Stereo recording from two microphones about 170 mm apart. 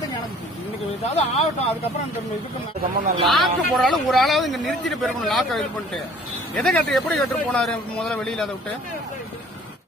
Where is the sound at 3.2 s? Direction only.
Centre (ahead or behind).